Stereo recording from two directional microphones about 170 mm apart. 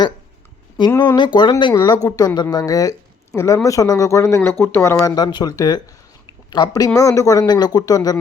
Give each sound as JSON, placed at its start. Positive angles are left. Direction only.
{"t": 0.9, "sound": "speech", "side_deg": 25}